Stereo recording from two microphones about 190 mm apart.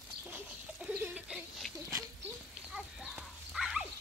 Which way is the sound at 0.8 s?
5° right (ahead or behind).